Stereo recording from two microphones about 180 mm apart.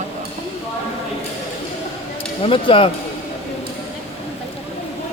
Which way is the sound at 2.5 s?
30° left (ahead or behind).